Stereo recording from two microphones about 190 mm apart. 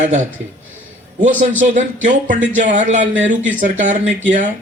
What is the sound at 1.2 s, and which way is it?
Speech, 40° right (ahead or behind).